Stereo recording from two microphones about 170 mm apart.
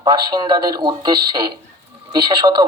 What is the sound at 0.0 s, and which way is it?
Speech, 25° right (ahead or behind).